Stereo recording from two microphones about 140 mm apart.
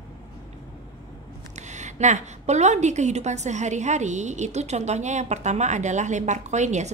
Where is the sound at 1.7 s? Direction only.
55° right (ahead or behind).